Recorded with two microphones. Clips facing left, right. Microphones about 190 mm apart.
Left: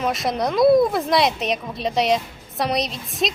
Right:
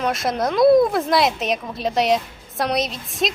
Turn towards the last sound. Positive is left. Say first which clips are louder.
# right 1 dB
turn(degrees=0)  # may be behind; listen again after turning